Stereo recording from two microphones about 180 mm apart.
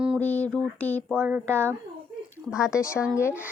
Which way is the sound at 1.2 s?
10° right (ahead or behind).